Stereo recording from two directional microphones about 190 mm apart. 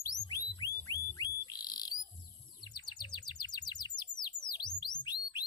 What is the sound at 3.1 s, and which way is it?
Chirp, 20° left (ahead or behind).